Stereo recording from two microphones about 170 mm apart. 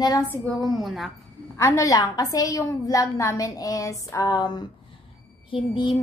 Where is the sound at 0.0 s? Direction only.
20° left (ahead or behind).